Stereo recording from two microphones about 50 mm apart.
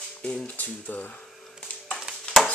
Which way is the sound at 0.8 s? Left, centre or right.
Left.